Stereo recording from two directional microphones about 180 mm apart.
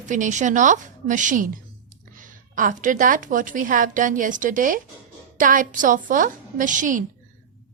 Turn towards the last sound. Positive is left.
turn(degrees=-45)  # may be behind; listen again after turning